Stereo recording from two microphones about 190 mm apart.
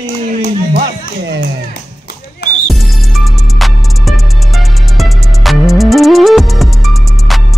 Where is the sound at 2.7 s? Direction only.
Centre (ahead or behind).